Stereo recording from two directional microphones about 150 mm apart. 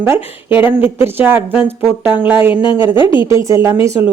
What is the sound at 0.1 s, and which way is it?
Speech, 15° right (ahead or behind).